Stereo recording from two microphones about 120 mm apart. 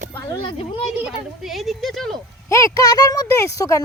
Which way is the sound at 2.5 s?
25° left (ahead or behind).